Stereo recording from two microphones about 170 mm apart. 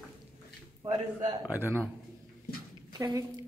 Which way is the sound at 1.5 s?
10° right (ahead or behind).